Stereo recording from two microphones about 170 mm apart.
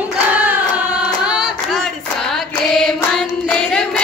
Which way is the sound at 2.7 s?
5° left (ahead or behind).